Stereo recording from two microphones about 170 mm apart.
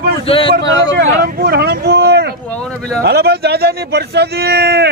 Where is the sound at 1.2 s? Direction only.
65° right (ahead or behind).